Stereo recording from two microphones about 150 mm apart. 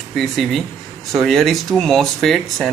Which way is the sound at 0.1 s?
Centre (ahead or behind).